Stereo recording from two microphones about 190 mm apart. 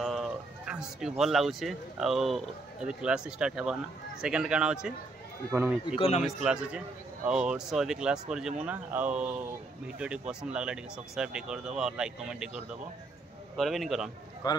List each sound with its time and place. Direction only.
0.0 s a man's voice: centre (ahead or behind)
5.9 s a man's voice: 30° left (ahead or behind)
6.2 s speech: 5° right (ahead or behind)
14.4 s speech: 20° left (ahead or behind)